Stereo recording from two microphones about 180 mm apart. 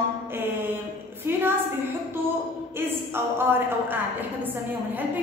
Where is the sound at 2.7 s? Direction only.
10° right (ahead or behind).